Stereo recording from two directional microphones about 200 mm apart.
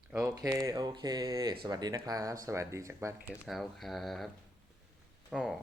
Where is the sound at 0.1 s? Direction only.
10° right (ahead or behind).